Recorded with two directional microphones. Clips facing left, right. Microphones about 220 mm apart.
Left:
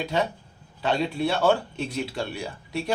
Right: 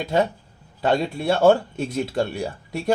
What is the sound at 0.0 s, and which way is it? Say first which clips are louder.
Speech: right 5 dB; 45° right (ahead or behind).